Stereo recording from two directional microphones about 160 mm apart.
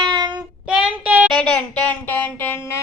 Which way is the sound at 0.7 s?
5° right (ahead or behind).